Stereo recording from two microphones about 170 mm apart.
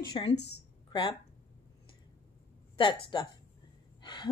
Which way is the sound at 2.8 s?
30° left (ahead or behind).